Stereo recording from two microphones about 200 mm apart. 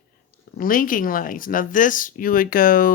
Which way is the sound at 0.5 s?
45° left (ahead or behind).